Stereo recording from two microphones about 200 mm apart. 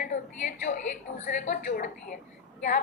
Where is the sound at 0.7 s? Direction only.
35° left (ahead or behind).